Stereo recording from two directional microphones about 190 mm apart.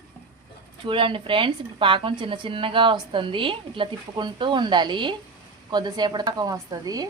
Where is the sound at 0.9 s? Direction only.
25° right (ahead or behind).